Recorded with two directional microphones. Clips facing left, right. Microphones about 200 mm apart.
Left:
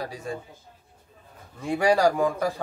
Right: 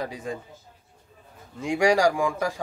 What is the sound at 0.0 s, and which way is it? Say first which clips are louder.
Speech: right 1 dB; 20° right (ahead or behind).